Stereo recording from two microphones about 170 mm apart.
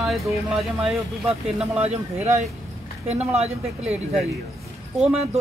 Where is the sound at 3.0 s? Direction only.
40° right (ahead or behind).